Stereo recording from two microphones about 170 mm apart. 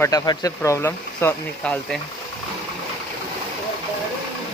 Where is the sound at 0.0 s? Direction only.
20° left (ahead or behind).